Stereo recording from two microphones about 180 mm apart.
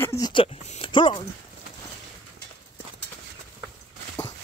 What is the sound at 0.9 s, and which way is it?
Speech, 25° left (ahead or behind).